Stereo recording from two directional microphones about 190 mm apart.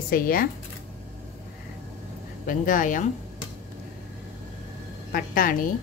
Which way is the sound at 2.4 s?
45° left (ahead or behind).